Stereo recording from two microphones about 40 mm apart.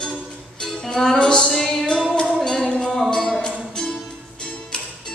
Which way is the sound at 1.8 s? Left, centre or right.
Left.